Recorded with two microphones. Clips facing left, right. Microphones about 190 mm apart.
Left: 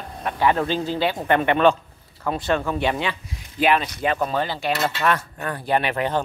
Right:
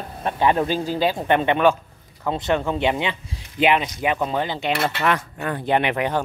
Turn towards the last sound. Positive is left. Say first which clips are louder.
# right 1 dB
turn(degrees=-15)  # may be behind; listen again after turning